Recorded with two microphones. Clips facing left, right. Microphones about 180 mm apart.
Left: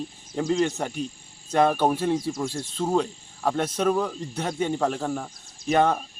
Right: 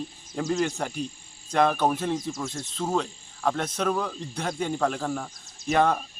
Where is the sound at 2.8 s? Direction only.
10° left (ahead or behind).